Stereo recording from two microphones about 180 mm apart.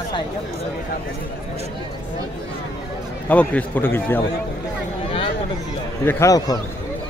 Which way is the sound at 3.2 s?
10° left (ahead or behind).